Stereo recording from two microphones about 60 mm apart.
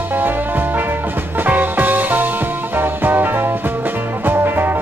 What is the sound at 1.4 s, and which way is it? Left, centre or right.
Music, right.